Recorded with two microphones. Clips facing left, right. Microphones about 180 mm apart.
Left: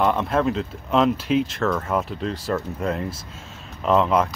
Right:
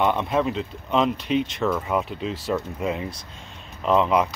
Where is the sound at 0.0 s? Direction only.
Centre (ahead or behind).